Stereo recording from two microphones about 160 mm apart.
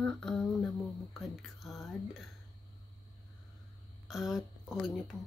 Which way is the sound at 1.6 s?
Centre (ahead or behind).